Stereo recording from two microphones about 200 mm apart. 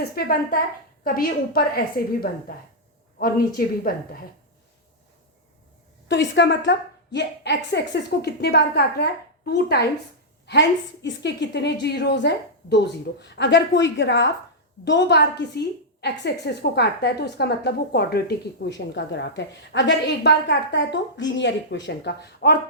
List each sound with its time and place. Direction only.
0.2 s a woman's voice: 50° left (ahead or behind)
3.2 s a woman's voice: 45° left (ahead or behind)
6.1 s a woman's voice: 60° left (ahead or behind)